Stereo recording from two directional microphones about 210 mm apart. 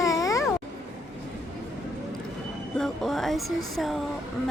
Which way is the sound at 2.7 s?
Centre (ahead or behind).